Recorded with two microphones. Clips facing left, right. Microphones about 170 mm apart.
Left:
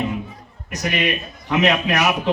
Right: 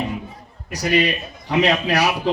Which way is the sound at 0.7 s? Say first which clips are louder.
Right 3 dB; 35° right (ahead or behind).